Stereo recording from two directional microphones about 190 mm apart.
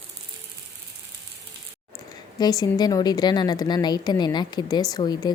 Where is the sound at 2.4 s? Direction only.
20° left (ahead or behind).